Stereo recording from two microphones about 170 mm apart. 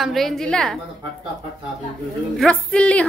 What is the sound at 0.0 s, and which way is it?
Speech, centre (ahead or behind).